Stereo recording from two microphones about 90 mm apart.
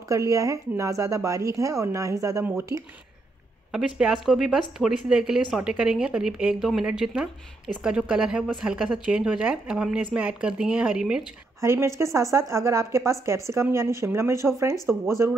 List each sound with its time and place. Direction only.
0.1 s speech: 35° right (ahead or behind)
3.7 s speech: 10° right (ahead or behind)
11.6 s speech: 30° right (ahead or behind)